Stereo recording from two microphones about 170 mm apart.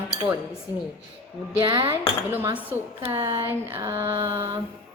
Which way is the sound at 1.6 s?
30° right (ahead or behind).